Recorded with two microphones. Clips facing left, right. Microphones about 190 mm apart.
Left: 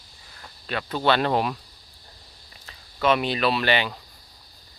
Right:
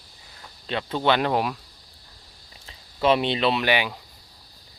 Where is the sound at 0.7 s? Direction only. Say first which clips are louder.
Even; 25° right (ahead or behind); by 1.5 s 10° right (ahead or behind).